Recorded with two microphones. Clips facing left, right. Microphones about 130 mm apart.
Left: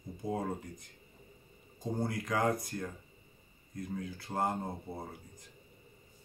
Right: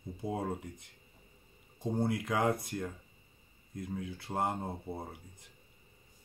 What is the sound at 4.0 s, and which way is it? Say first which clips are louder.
Speech: even; 20° right (ahead or behind).